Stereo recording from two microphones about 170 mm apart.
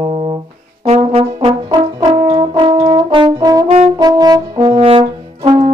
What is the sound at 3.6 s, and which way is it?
Brass instrument, 35° right (ahead or behind).